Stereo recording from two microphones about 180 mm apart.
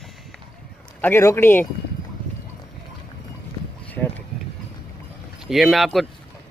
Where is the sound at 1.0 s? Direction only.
15° left (ahead or behind).